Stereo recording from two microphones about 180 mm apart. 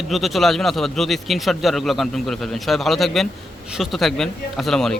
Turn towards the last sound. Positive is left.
turn(degrees=5)  # may be behind; listen again after turning